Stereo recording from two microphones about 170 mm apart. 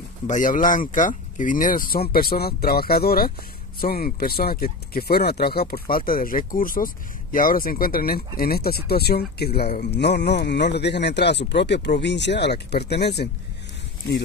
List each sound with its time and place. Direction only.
0.3 s speech: 50° left (ahead or behind); by 13.3 s 80° left